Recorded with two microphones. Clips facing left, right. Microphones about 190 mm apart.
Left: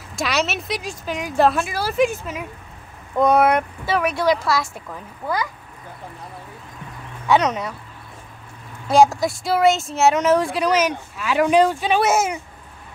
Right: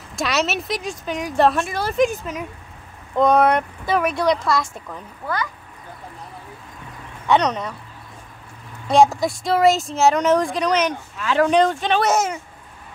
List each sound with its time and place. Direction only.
0.1 s speech: centre (ahead or behind)
5.2 s speech: 15° left (ahead or behind)
7.2 s speech: 5° left (ahead or behind)
8.8 s speech: centre (ahead or behind)